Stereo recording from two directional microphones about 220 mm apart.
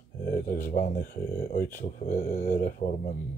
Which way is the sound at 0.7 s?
35° left (ahead or behind).